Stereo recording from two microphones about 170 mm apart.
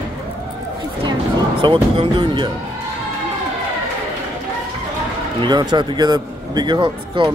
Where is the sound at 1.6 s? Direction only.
30° right (ahead or behind).